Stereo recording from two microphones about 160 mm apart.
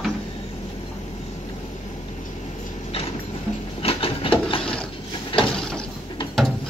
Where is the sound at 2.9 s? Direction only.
40° left (ahead or behind).